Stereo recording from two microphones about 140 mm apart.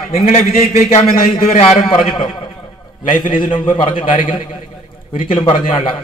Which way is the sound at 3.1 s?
80° left.